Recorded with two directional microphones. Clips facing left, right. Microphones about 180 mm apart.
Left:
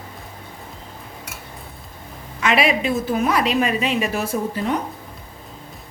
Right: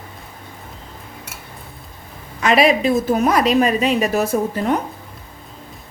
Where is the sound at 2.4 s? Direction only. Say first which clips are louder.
Right 4 dB; 40° right (ahead or behind).